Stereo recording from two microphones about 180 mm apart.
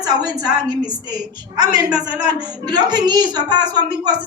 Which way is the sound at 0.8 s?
20° right (ahead or behind).